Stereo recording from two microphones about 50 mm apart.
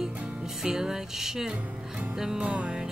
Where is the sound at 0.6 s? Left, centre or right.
Centre.